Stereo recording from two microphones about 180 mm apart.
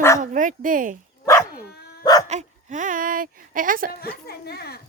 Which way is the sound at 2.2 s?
40° right (ahead or behind).